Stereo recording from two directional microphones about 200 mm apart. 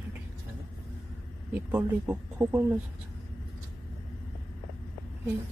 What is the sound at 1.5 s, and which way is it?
Speech, 10° right (ahead or behind).